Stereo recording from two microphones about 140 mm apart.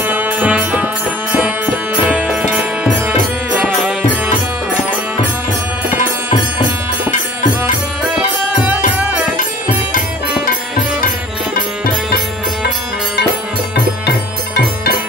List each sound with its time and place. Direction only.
0.0 s music: 15° right (ahead or behind)
2.0 s music: 5° right (ahead or behind)
8.0 s music: 10° right (ahead or behind)
11.5 s music: 90° left